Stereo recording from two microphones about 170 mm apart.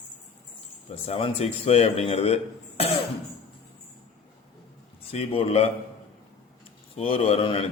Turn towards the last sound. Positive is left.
turn(degrees=35)  # may be behind; listen again after turning